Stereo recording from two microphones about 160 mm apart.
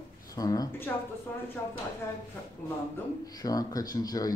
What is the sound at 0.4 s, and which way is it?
Speech, 20° left (ahead or behind).